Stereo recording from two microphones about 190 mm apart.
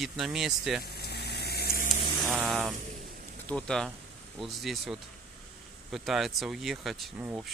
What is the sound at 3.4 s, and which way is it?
Speech, 5° left (ahead or behind).